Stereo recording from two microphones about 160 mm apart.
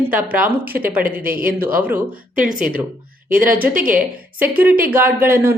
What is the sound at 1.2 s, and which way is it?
Speech, 65° right (ahead or behind).